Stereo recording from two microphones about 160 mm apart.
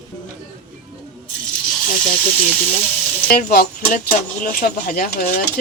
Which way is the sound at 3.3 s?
65° left (ahead or behind).